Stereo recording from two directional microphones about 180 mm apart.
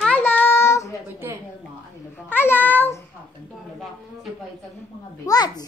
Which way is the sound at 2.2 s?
10° left (ahead or behind).